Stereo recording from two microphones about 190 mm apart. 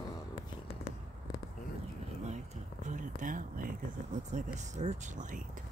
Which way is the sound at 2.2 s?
35° right (ahead or behind).